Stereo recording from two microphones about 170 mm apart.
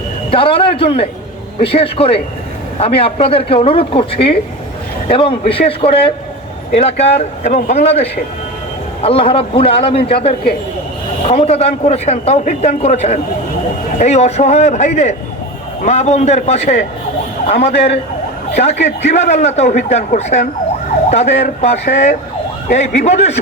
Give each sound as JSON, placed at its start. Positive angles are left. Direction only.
{"t": 0.3, "sound": "a man's voice", "side_deg": 30}